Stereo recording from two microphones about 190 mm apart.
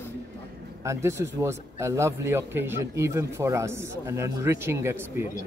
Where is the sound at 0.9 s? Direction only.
15° right (ahead or behind).